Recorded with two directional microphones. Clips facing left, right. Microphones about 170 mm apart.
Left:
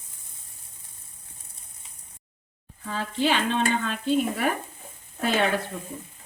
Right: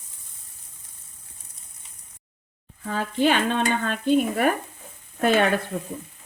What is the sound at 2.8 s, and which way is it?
Stir, 50° right (ahead or behind).